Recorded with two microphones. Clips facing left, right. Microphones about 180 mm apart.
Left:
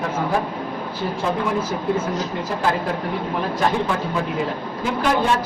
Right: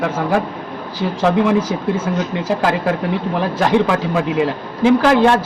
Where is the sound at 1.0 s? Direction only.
90° right.